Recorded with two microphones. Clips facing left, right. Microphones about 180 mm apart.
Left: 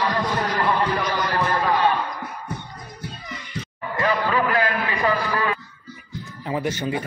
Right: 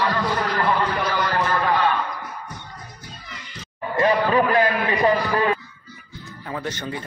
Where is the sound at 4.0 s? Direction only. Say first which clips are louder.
Right 3 dB; 25° right (ahead or behind).